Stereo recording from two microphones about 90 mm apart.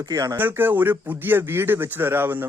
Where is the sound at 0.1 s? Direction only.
45° right (ahead or behind).